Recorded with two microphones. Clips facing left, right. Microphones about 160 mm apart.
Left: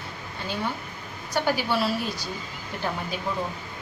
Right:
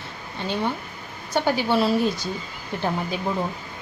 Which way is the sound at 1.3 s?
25° right (ahead or behind).